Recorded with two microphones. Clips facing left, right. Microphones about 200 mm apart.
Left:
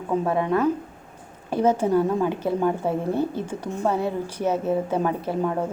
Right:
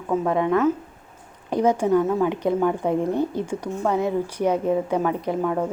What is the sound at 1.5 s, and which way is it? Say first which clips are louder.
Speech: right 1 dB; 15° right (ahead or behind).